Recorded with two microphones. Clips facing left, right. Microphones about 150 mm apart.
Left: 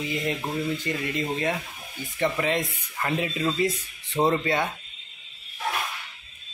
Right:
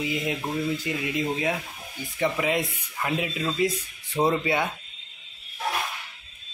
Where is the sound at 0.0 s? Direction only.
5° right (ahead or behind).